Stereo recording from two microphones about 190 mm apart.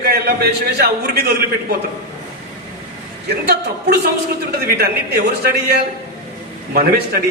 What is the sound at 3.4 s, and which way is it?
A woman's voice, 55° right (ahead or behind).